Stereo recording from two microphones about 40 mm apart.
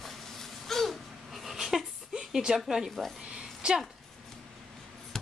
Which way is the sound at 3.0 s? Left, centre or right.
Centre.